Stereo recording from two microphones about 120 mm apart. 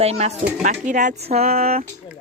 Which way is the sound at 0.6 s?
90° right.